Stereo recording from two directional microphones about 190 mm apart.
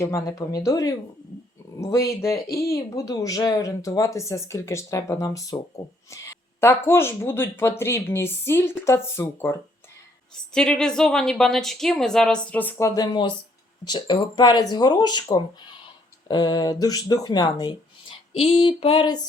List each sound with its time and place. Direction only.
0.0 s speech: 15° left (ahead or behind)